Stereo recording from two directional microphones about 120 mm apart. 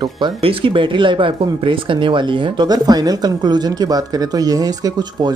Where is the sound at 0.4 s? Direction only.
50° right (ahead or behind).